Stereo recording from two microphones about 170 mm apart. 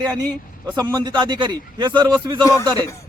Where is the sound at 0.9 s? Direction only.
25° right (ahead or behind).